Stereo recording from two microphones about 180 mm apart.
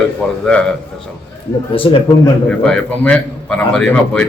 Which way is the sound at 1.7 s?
30° left (ahead or behind).